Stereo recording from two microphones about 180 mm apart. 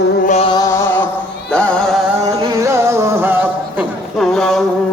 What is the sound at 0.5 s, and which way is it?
Music, 15° left (ahead or behind).